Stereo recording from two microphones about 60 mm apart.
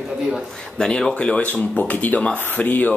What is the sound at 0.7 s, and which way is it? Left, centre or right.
Speech, centre.